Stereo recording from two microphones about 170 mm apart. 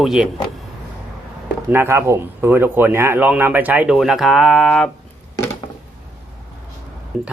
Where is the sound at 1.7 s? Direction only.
15° right (ahead or behind); by 4.9 s centre (ahead or behind).